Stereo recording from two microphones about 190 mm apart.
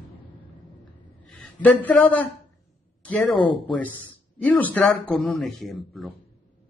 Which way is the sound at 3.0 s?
5° left (ahead or behind).